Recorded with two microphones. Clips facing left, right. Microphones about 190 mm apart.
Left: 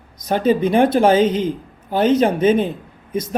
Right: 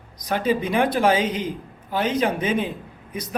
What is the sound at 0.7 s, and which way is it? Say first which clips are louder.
Speech: left 6 dB; 25° left (ahead or behind).